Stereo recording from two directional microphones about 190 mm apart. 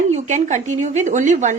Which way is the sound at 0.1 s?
40° right (ahead or behind).